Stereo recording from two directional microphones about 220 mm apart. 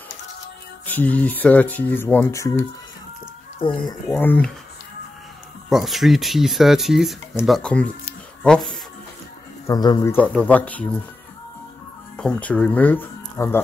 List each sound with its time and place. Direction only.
0.8 s speech: 5° left (ahead or behind)
4.2 s speech: 5° left (ahead or behind)
5.7 s speech: centre (ahead or behind)
9.7 s speech: 15° left (ahead or behind)
12.2 s speech: 5° left (ahead or behind)